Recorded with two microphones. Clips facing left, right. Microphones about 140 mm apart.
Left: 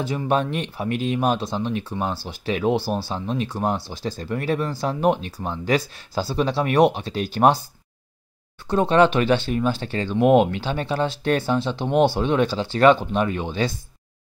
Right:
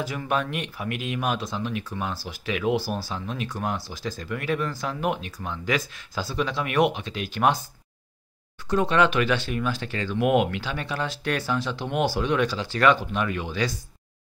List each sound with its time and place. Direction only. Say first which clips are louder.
0.0 s speech: left 5 dB; 25° left (ahead or behind)
8.6 s speech: left 4 dB; 30° left (ahead or behind)